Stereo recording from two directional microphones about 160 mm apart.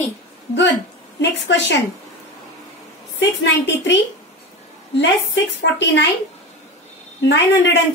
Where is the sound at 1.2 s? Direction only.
90° left.